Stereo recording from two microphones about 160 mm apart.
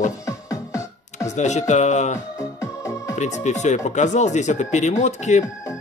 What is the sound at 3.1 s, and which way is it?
Speech, 45° left (ahead or behind).